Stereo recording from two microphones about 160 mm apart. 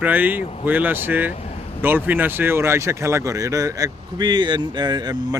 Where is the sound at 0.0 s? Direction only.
10° right (ahead or behind).